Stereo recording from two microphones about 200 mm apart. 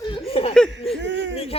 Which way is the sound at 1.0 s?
65° right (ahead or behind).